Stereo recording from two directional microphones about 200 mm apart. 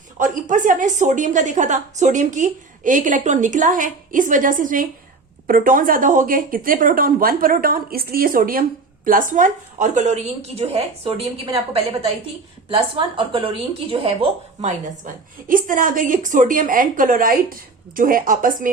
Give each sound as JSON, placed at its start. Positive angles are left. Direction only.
{"t": 0.2, "sound": "a woman's voice", "side_deg": -40}